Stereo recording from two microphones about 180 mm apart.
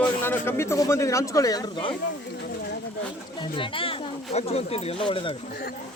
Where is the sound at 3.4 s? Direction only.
30° left (ahead or behind).